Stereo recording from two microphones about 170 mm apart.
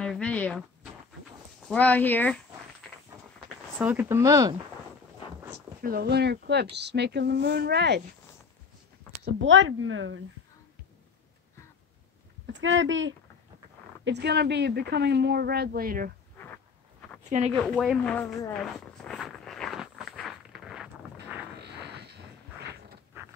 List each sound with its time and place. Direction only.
0.0 s a sound: 5° left (ahead or behind)
1.7 s speech: 10° left (ahead or behind)
3.7 s speech: 10° right (ahead or behind)
5.8 s speech: 60° right (ahead or behind); by 8.0 s 80° right
9.2 s speech: 90° right
12.4 s speech: 90° right
14.0 s speech: 80° right; by 16.1 s 60° right (ahead or behind)
17.6 s speech: centre (ahead or behind)
18.6 s a sound: centre (ahead or behind)
21.5 s a sound: 80° right